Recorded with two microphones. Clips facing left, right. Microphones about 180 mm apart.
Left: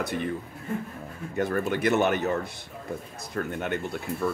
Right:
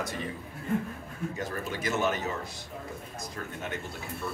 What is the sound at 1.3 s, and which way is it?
Speech, 60° left (ahead or behind).